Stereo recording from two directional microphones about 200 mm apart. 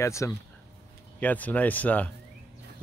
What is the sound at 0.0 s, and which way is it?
Speech, 15° left (ahead or behind).